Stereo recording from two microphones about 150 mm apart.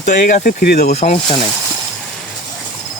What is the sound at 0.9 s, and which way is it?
Speech, 50° left (ahead or behind).